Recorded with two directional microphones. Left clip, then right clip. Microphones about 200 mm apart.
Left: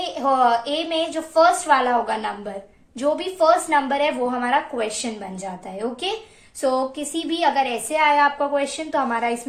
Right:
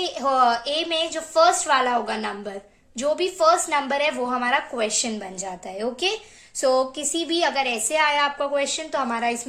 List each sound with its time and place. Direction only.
0.0 s a woman's voice: 50° right (ahead or behind)
6.6 s a woman's voice: 45° right (ahead or behind)